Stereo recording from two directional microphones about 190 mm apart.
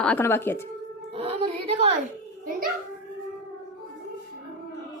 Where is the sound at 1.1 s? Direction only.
30° right (ahead or behind).